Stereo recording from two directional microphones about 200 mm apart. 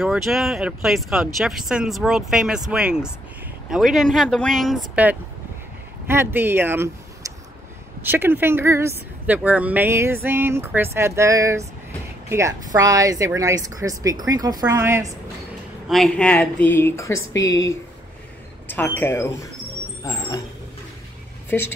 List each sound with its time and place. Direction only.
0.0 s speech: centre (ahead or behind)
15.9 s speech: 5° left (ahead or behind)
18.7 s speech: 10° left (ahead or behind)
20.0 s vehicle: 15° left (ahead or behind)
21.5 s speech: 10° left (ahead or behind)